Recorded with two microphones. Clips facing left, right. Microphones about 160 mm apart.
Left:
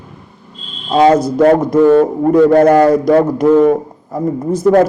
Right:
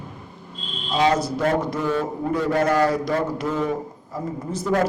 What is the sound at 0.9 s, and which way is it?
Speech, 50° left (ahead or behind).